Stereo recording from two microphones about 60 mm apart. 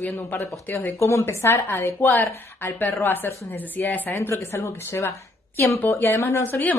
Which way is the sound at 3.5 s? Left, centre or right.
Left.